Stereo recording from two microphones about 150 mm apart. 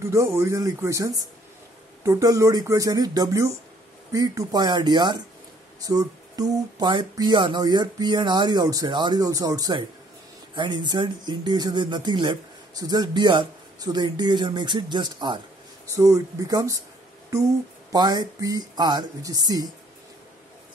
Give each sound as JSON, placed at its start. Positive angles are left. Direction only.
{"t": 0.0, "sound": "speech", "side_deg": -20}
{"t": 17.9, "sound": "speech", "side_deg": -25}